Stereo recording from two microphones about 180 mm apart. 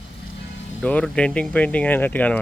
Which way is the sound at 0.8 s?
5° left (ahead or behind).